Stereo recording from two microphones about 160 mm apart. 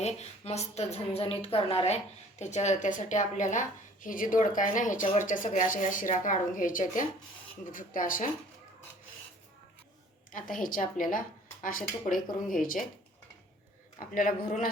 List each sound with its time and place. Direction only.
0.0 s a woman's voice: 45° left (ahead or behind); by 8.3 s 60° left (ahead or behind)
10.3 s speech: 60° left (ahead or behind)
14.1 s speech: 60° left (ahead or behind)